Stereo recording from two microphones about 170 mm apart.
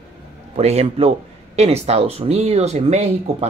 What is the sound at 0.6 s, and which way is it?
Speech, 40° right (ahead or behind).